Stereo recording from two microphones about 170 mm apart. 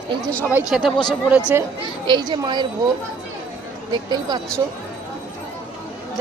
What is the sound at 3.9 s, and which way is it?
Speech, 25° right (ahead or behind).